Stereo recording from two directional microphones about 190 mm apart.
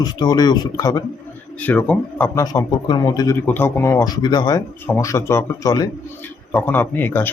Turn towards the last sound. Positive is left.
turn(degrees=10)  # may be behind; listen again after turning